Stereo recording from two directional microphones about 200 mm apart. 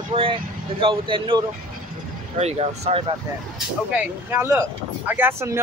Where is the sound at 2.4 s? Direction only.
30° right (ahead or behind).